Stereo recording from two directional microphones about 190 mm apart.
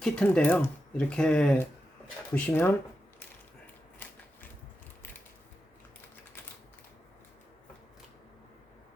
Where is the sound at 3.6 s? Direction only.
10° left (ahead or behind).